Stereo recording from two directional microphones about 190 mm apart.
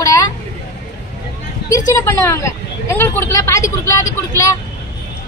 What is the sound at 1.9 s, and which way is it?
A woman's voice, 15° left (ahead or behind).